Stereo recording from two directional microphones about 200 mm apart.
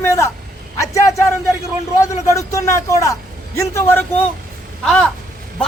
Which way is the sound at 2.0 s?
15° left (ahead or behind).